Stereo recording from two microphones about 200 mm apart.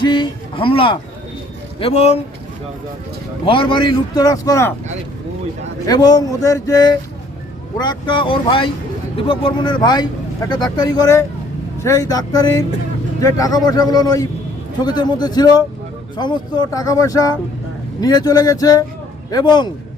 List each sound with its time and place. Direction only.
0.0 s speech: 25° left (ahead or behind)
3.4 s speech: 25° left (ahead or behind)
5.9 s speech: 20° left (ahead or behind)